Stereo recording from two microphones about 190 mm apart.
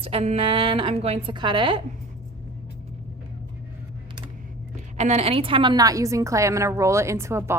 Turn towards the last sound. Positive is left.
turn(degrees=-15)  # may be behind; listen again after turning